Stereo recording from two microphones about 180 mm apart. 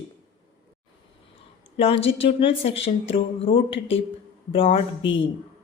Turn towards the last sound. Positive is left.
turn(degrees=30)  # may be behind; listen again after turning